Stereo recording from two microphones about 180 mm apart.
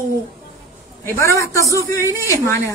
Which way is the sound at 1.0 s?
15° left (ahead or behind).